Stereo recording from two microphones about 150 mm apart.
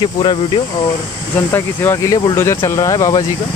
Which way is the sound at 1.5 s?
15° left (ahead or behind).